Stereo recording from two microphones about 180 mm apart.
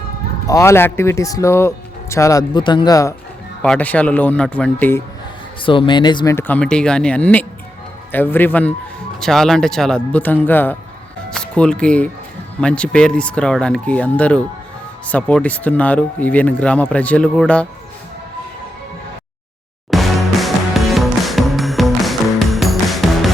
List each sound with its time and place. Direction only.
0.4 s speech: 15° left (ahead or behind)
3.6 s speech: 5° left (ahead or behind)
5.6 s speech: 30° left (ahead or behind)
6.3 s speech: 10° left (ahead or behind)
19.9 s music: centre (ahead or behind)